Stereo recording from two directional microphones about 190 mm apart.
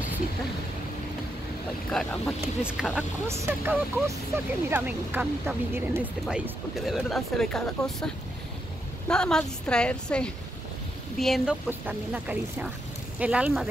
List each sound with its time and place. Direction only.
1.9 s speech: 5° left (ahead or behind)